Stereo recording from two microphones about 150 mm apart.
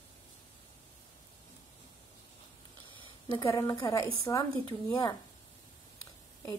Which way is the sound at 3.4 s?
25° left (ahead or behind).